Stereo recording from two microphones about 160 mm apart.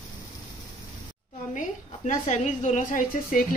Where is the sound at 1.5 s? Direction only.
50° left (ahead or behind).